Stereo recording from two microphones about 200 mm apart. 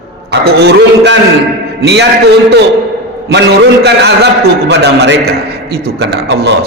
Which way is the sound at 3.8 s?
55° right (ahead or behind).